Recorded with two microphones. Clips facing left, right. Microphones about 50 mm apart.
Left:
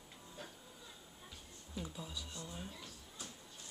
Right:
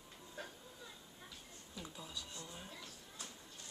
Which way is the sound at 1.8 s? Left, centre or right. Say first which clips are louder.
Left 3 dB; centre.